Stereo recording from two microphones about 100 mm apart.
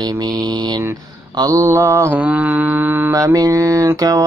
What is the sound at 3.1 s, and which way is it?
Speech, 35° right (ahead or behind).